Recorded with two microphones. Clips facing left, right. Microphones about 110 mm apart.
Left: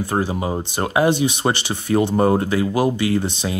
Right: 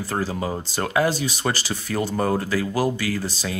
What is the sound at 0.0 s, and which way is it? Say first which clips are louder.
Speech: left 4 dB; 20° left (ahead or behind).